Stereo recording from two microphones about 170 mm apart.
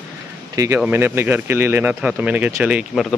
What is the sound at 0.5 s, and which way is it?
Speech, 15° right (ahead or behind).